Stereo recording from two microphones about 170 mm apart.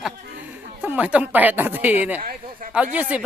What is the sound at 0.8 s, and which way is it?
A man's voice, 10° right (ahead or behind).